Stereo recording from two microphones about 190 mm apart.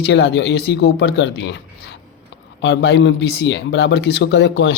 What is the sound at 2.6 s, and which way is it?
Speech, 65° left (ahead or behind).